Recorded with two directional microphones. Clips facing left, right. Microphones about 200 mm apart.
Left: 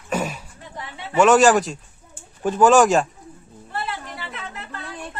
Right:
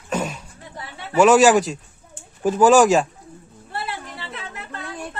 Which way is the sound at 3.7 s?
30° right (ahead or behind).